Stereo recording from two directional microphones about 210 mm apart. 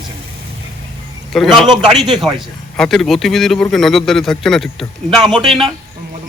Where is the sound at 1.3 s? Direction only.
Centre (ahead or behind).